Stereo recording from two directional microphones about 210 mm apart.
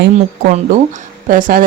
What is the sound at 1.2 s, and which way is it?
Speech, 40° right (ahead or behind).